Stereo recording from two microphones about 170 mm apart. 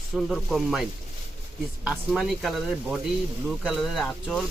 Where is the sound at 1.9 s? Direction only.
Centre (ahead or behind).